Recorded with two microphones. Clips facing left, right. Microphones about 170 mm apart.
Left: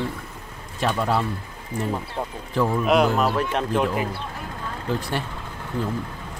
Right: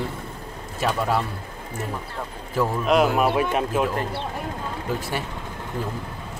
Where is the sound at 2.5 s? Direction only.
Centre (ahead or behind).